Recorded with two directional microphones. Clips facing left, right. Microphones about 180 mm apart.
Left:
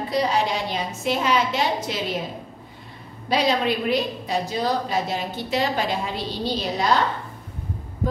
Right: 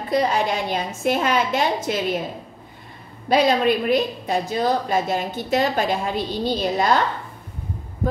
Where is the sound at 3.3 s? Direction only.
50° right (ahead or behind).